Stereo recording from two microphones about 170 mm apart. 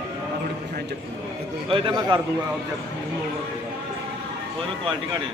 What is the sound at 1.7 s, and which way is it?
Speech, 30° right (ahead or behind).